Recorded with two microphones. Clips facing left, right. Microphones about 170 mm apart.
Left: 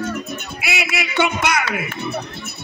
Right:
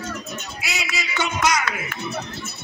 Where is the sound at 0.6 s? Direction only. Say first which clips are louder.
Left 6 dB; 60° left (ahead or behind).